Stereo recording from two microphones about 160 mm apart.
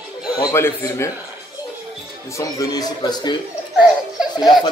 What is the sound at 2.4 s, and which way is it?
A man's voice, 20° left (ahead or behind).